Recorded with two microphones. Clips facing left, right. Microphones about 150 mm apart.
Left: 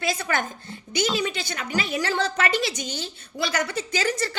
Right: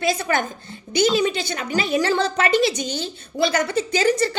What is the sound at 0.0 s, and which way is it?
A woman's voice, 20° right (ahead or behind).